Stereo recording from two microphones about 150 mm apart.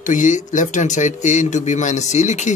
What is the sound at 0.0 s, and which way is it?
Speech, 60° left (ahead or behind).